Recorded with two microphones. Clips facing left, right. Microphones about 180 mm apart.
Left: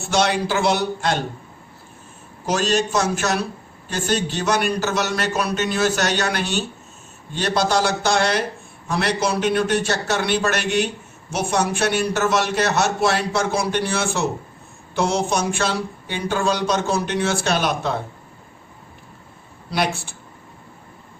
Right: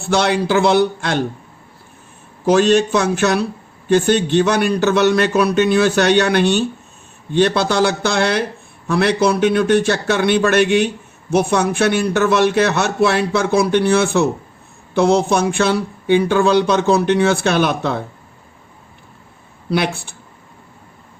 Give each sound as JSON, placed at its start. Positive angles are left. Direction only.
{"t": 0.0, "sound": "a man's voice", "side_deg": -55}
{"t": 2.5, "sound": "a man's voice", "side_deg": -60}
{"t": 19.7, "sound": "a man's voice", "side_deg": -60}